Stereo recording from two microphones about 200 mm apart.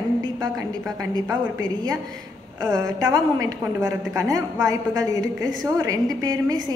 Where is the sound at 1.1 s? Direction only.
20° right (ahead or behind).